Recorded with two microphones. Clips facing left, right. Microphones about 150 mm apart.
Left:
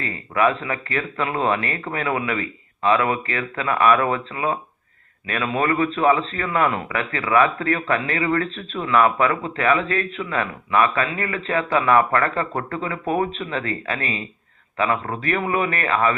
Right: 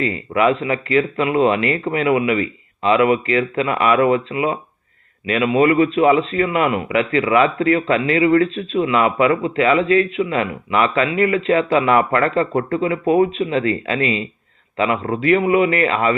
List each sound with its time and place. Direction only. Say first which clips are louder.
0.0 s a man's voice: right 4 dB; 20° right (ahead or behind)